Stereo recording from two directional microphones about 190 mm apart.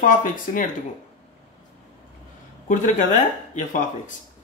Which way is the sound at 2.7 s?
40° left (ahead or behind).